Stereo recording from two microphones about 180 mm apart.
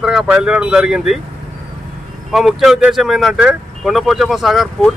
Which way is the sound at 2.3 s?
Centre (ahead or behind).